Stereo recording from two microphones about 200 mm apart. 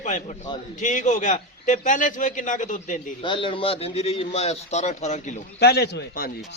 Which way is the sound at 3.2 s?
25° left (ahead or behind).